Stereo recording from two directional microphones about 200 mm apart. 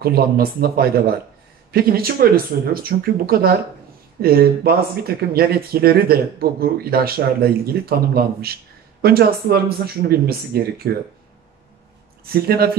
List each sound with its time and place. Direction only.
0.0 s speech: 50° right (ahead or behind)
12.3 s speech: 50° right (ahead or behind)